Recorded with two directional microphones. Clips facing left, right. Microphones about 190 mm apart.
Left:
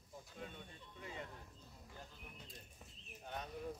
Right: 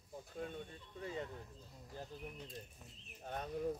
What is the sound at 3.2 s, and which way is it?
Speech, 45° right (ahead or behind).